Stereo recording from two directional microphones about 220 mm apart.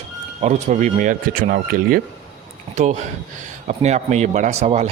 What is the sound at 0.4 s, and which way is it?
Speech, 35° right (ahead or behind).